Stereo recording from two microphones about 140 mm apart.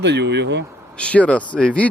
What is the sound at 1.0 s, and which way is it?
Speech, 10° left (ahead or behind).